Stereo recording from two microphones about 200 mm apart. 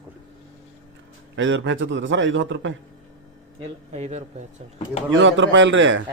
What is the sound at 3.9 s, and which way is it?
Speech, 35° right (ahead or behind).